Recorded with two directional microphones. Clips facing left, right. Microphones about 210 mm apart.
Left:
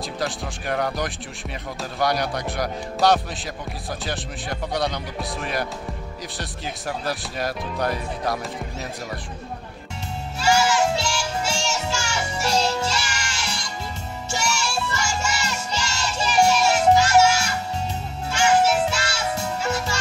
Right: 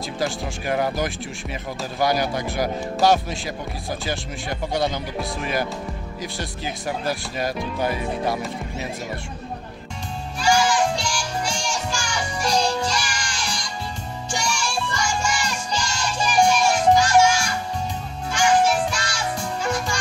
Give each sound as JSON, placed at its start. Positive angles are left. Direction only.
{"t": 0.2, "sound": "speech", "side_deg": -5}
{"t": 10.7, "sound": "music", "side_deg": 25}
{"t": 14.7, "sound": "music", "side_deg": 5}
{"t": 15.0, "sound": "music", "side_deg": 25}